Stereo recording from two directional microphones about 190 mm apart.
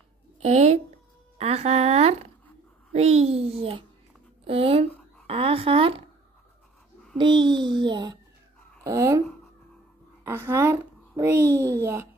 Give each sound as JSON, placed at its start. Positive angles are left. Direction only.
{"t": 0.4, "sound": "a woman's voice", "side_deg": -35}
{"t": 7.2, "sound": "a child's voice", "side_deg": -25}
{"t": 10.2, "sound": "a child's voice", "side_deg": -10}